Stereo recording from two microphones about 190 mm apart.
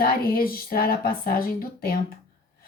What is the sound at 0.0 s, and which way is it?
A woman's voice, 50° left (ahead or behind).